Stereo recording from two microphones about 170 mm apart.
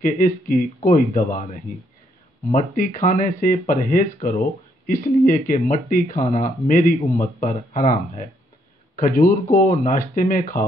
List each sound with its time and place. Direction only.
0.0 s speech: 55° left (ahead or behind)
2.7 s speech: 50° left (ahead or behind)